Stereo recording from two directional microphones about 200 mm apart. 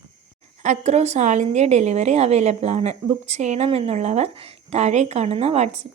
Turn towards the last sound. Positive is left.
turn(degrees=-30)  # may be behind; listen again after turning